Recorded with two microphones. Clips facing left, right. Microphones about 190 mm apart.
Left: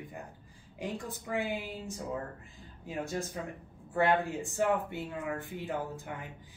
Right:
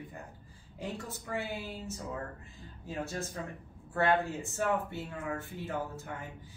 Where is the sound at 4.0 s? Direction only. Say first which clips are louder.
Left 1 dB; 15° left (ahead or behind).